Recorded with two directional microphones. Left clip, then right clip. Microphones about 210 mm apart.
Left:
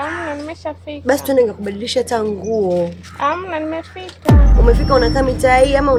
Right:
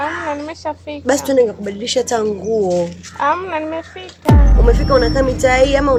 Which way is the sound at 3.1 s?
20° right (ahead or behind).